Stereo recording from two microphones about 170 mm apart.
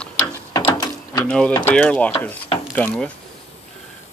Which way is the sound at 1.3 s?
5° left (ahead or behind).